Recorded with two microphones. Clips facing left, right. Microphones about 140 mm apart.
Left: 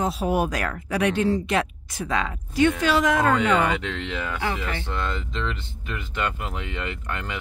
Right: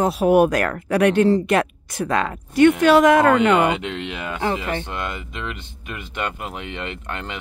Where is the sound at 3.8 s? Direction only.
15° right (ahead or behind).